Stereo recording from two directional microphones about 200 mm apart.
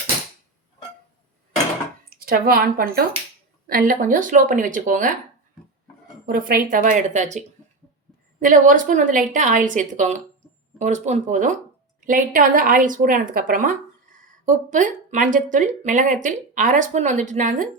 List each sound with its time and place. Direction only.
2.0 s a woman's voice: 45° right (ahead or behind)
6.2 s a woman's voice: 45° right (ahead or behind)